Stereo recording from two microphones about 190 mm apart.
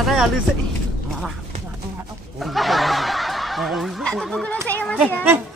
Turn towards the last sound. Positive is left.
turn(degrees=5)  # may be behind; listen again after turning